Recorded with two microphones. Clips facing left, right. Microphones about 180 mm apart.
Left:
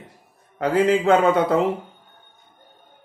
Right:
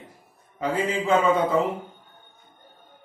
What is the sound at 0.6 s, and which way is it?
A man's voice, 75° left (ahead or behind).